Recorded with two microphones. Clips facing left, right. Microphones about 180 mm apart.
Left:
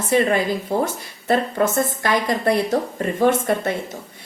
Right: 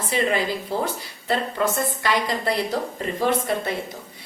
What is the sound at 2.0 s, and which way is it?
A woman's voice, 50° left (ahead or behind).